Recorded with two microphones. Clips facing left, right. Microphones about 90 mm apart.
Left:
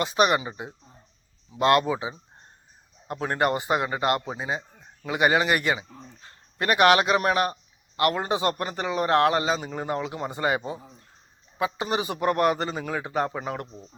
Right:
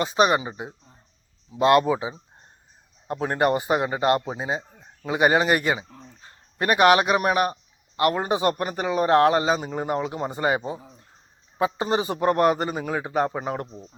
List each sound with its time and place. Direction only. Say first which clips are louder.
0.0 s a man's voice: right 2 dB; 20° right (ahead or behind)
3.1 s a man's voice: right 3 dB; 20° right (ahead or behind)
13.7 s a man's voice: right 3 dB; 10° right (ahead or behind)